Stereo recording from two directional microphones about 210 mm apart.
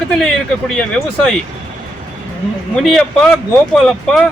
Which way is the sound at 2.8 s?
Centre (ahead or behind).